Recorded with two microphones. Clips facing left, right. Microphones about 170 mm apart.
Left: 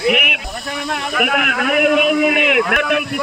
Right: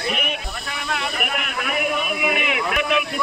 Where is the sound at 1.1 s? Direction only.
75° left (ahead or behind).